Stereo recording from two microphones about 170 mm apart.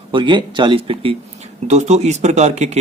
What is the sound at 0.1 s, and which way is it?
Speech, 30° right (ahead or behind).